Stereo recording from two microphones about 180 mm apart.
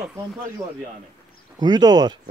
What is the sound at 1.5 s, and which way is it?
Speech, 25° right (ahead or behind).